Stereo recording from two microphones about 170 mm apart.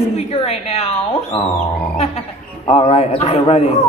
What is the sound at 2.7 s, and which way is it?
Speech, 35° left (ahead or behind).